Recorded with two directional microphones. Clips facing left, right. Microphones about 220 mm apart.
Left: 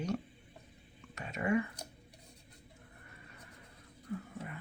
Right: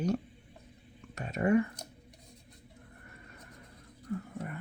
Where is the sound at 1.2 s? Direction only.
45° right (ahead or behind).